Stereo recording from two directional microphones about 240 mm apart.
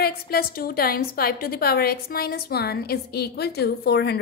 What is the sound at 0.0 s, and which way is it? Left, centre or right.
A woman's voice, left.